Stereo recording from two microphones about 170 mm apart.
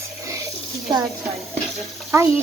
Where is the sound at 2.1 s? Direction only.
15° right (ahead or behind).